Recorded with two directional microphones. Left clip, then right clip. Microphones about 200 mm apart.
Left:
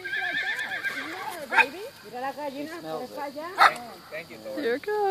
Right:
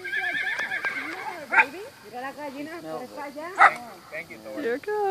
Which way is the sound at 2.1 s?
50° left (ahead or behind).